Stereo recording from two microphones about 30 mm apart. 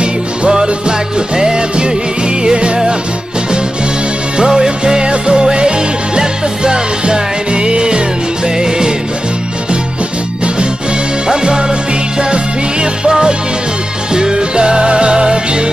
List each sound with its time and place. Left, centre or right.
0.5 s music: right
4.4 s music: right
11.2 s music: right
14.1 s music: right